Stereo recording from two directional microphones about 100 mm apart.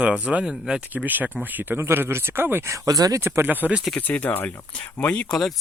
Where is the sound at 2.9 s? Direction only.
40° right (ahead or behind).